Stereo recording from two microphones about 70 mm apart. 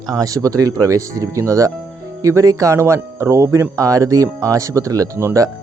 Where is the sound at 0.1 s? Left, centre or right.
Right.